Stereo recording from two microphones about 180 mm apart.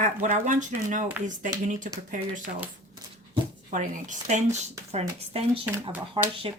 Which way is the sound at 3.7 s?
45° right (ahead or behind).